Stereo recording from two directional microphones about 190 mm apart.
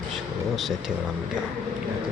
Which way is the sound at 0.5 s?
Centre (ahead or behind).